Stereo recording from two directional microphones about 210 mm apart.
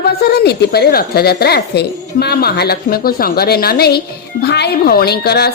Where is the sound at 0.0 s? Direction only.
50° left (ahead or behind).